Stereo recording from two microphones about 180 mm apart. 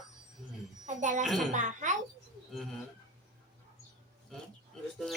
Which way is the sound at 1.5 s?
45° right (ahead or behind).